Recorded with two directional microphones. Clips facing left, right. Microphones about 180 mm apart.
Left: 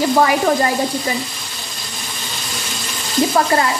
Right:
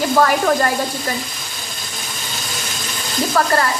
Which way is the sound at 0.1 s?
10° left (ahead or behind).